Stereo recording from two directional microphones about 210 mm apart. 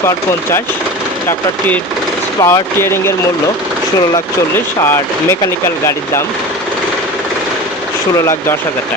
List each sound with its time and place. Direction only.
2.4 s speech: 10° left (ahead or behind)
8.2 s speech: 10° left (ahead or behind)